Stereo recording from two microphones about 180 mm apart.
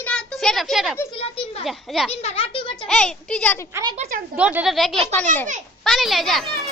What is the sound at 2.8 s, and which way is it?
Speech, 5° left (ahead or behind).